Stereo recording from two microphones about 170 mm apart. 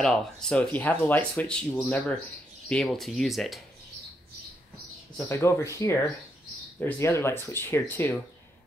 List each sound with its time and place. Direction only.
0.0 s speech: 5° left (ahead or behind)
2.7 s speech: centre (ahead or behind)
5.3 s speech: 15° left (ahead or behind)